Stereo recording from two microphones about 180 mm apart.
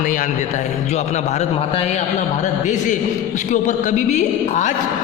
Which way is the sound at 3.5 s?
45° left (ahead or behind).